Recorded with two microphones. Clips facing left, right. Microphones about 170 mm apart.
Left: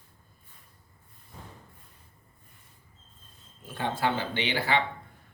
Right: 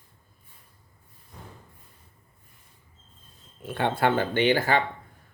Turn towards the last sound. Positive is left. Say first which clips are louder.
# right 6 dB
turn(degrees=-45)  # may be behind; listen again after turning